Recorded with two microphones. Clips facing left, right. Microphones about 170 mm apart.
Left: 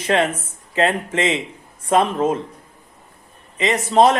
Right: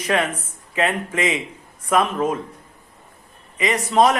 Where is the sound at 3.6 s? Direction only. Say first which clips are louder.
Left 2 dB; 25° left (ahead or behind).